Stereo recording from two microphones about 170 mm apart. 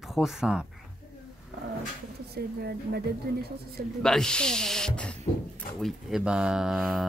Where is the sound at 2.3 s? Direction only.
70° right (ahead or behind).